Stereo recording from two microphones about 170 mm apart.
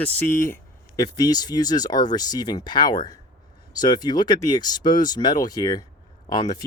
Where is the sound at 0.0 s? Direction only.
10° left (ahead or behind).